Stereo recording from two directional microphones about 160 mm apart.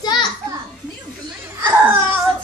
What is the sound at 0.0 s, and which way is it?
Children playing, 25° left (ahead or behind).